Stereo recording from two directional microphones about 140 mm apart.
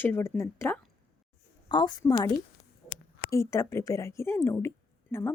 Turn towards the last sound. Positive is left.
turn(degrees=15)  # may be behind; listen again after turning